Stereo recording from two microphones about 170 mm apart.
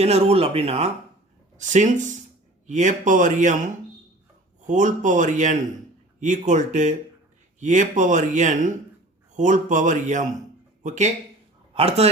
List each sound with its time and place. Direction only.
0.0 s speech: 35° right (ahead or behind)
4.6 s speech: 45° right (ahead or behind)